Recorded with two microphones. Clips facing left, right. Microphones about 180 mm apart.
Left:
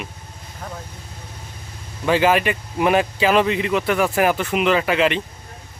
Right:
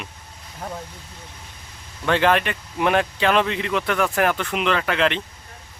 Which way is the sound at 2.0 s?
5° left (ahead or behind).